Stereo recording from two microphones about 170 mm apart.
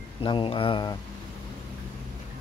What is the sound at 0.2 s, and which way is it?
Speech, 30° left (ahead or behind).